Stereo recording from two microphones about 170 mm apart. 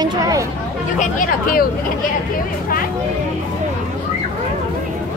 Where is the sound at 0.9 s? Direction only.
55° left (ahead or behind).